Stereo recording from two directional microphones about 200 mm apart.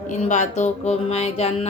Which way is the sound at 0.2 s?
35° left (ahead or behind).